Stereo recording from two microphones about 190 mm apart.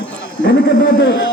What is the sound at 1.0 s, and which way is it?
Speech, 60° left (ahead or behind).